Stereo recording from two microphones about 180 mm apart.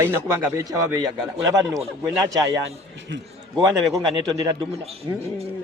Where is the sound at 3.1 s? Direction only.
90° right.